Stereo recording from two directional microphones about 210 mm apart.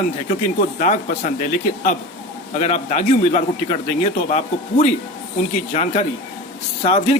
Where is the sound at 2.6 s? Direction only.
35° left (ahead or behind).